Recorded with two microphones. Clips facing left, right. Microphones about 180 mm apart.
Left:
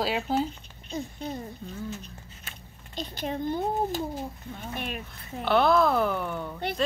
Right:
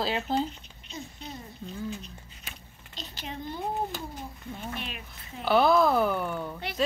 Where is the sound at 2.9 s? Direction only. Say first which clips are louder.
Left 8 dB; 50° left (ahead or behind).